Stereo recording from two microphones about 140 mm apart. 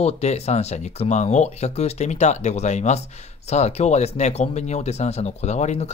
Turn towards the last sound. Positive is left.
turn(degrees=50)  # may be behind; listen again after turning